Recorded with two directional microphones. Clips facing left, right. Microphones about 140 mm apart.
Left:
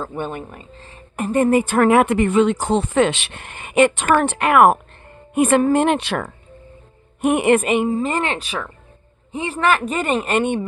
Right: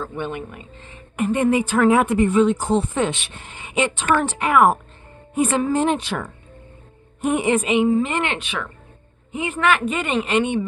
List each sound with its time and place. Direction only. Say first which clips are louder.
0.0 s a woman's voice: left 1 dB; 40° left (ahead or behind)